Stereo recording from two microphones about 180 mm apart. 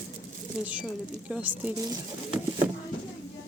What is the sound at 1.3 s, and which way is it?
Speech, 10° right (ahead or behind).